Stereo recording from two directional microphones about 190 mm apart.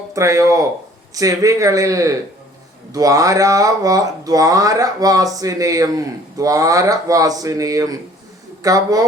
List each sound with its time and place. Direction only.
0.1 s speech: 15° right (ahead or behind)